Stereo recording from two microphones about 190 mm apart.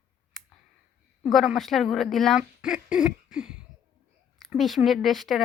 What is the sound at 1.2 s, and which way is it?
A woman's voice, centre (ahead or behind).